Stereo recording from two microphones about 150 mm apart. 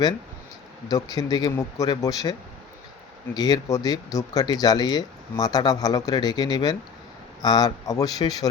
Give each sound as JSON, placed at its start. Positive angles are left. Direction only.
{"t": 0.9, "sound": "speech", "side_deg": 25}
{"t": 3.3, "sound": "speech", "side_deg": 25}